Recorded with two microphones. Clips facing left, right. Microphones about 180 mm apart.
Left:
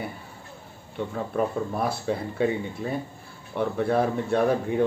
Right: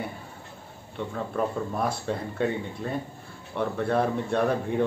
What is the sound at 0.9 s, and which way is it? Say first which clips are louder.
Speech: left 2 dB; 5° left (ahead or behind).